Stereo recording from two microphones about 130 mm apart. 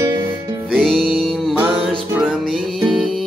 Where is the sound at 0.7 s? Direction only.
5° left (ahead or behind).